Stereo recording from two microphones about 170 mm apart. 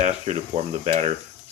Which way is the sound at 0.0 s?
45° right (ahead or behind).